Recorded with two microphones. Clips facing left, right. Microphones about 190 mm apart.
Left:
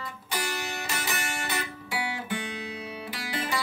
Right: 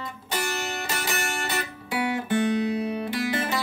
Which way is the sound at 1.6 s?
50° right (ahead or behind).